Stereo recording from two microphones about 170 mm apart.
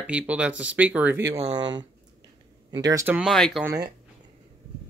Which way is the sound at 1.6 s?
25° right (ahead or behind).